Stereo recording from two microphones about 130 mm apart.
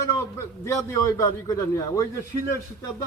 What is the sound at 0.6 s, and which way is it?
Speech, 25° left (ahead or behind).